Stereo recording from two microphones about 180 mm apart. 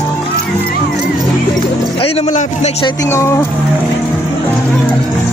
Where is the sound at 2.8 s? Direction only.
15° left (ahead or behind).